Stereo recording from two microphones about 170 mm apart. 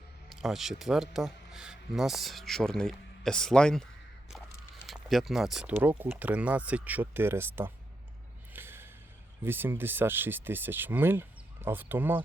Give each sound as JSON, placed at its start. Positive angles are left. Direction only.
{"t": 0.3, "sound": "speech", "side_deg": 0}
{"t": 4.9, "sound": "speech", "side_deg": 0}
{"t": 8.5, "sound": "gasp", "side_deg": -15}
{"t": 9.4, "sound": "speech", "side_deg": -10}